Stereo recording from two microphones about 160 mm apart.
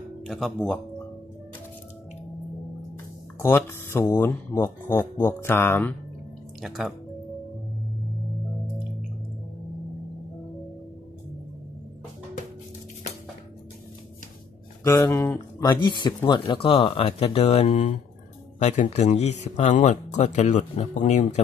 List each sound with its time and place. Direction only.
0.3 s speech: centre (ahead or behind)
3.4 s speech: 15° left (ahead or behind)
6.6 s speech: centre (ahead or behind)
14.8 s speech: 15° left (ahead or behind)
15.8 s speech: 30° left (ahead or behind); by 21.4 s 50° left (ahead or behind)